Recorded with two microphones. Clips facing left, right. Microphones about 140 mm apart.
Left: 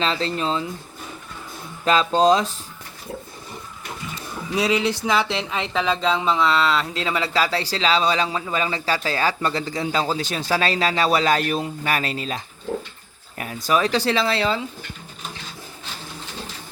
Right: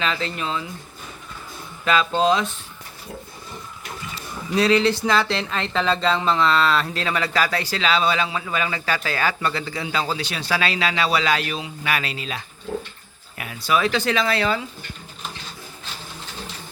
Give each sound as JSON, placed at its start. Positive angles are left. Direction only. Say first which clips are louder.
{"t": 0.0, "sound": "speech", "louder": "left 3 dB", "side_deg": 30}
{"t": 1.8, "sound": "speech", "louder": "left 2 dB", "side_deg": 35}
{"t": 4.5, "sound": "speech", "louder": "right 3 dB", "side_deg": 10}
{"t": 13.4, "sound": "speech", "louder": "left 1 dB", "side_deg": 40}